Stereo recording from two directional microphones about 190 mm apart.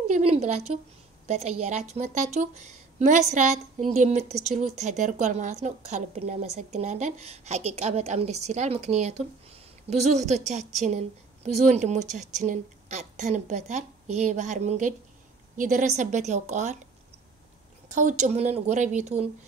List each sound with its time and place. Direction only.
0.1 s a woman's voice: 35° right (ahead or behind)
17.8 s a woman's voice: 40° right (ahead or behind)